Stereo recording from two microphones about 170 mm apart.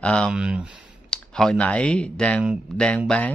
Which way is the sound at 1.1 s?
5° left (ahead or behind).